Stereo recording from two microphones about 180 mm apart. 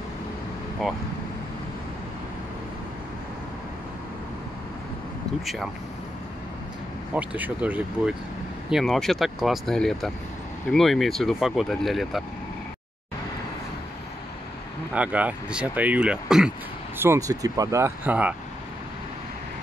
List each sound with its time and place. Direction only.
5.4 s speech: centre (ahead or behind)
7.2 s speech: 10° right (ahead or behind)
15.0 s speech: 10° right (ahead or behind)
17.0 s speech: 15° right (ahead or behind)